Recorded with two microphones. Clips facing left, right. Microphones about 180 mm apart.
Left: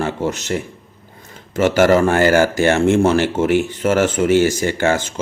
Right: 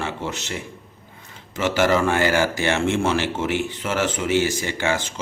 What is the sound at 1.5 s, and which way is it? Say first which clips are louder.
Speech: left 6 dB; 50° left (ahead or behind).